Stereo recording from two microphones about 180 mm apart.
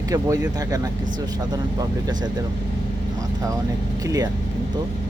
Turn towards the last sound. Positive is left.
turn(degrees=-20)  # may be behind; listen again after turning